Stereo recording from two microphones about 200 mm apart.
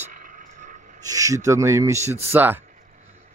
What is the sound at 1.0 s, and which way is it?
Speech, 15° right (ahead or behind).